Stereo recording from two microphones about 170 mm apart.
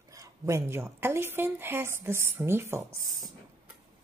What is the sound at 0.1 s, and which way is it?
A woman's voice, 20° right (ahead or behind).